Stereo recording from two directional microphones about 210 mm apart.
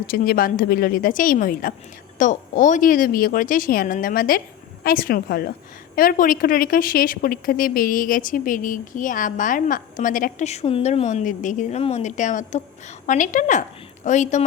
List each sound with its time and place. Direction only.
0.1 s speech: 45° left (ahead or behind)